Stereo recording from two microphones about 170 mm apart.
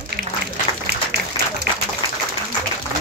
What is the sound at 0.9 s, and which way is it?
Applause, 70° right (ahead or behind).